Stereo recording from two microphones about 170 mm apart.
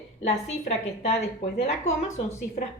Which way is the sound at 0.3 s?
40° left (ahead or behind).